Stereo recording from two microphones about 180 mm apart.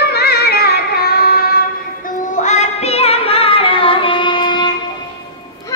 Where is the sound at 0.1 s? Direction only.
60° left (ahead or behind).